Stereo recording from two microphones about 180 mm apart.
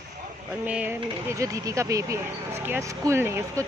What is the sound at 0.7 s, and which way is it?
Speech, 10° right (ahead or behind).